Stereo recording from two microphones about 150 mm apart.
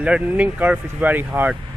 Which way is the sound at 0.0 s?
10° right (ahead or behind).